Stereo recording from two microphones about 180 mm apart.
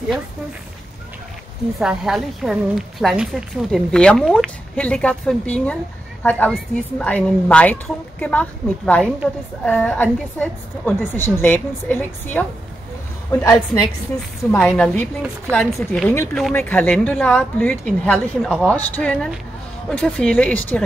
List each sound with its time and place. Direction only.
1.8 s a woman's voice: centre (ahead or behind)